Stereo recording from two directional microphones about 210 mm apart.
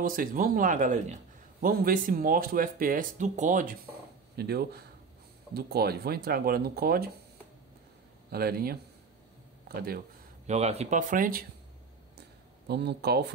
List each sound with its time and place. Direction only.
0.0 s speech: 40° right (ahead or behind)
4.4 s speech: 50° right (ahead or behind)
8.3 s speech: 45° right (ahead or behind)
9.8 s speech: 45° right (ahead or behind)
12.2 s a sound: 50° right (ahead or behind)